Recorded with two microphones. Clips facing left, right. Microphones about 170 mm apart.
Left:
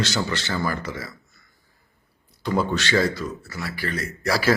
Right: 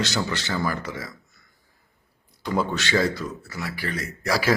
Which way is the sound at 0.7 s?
15° right (ahead or behind).